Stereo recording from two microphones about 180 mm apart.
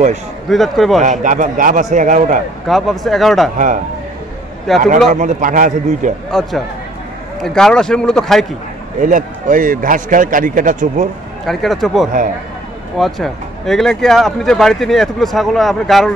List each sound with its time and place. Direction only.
0.5 s speech: centre (ahead or behind)
1.0 s a man's voice: 45° right (ahead or behind)
2.7 s speech: centre (ahead or behind)
3.5 s a man's voice: 45° right (ahead or behind)
4.7 s speech: centre (ahead or behind)
5.1 s a man's voice: 45° right (ahead or behind)
6.3 s speech: centre (ahead or behind)
9.0 s a man's voice: 45° right (ahead or behind)
11.4 s speech: centre (ahead or behind)